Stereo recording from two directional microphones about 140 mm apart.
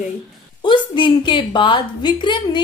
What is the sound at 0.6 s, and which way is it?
A woman's voice, 35° left (ahead or behind).